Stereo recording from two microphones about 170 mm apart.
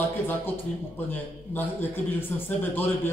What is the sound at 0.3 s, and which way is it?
A man's voice, 10° left (ahead or behind).